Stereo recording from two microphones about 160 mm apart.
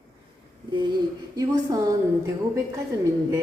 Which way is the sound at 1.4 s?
25° right (ahead or behind).